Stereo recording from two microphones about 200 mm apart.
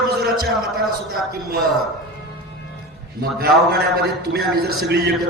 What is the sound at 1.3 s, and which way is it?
Speech, 50° right (ahead or behind).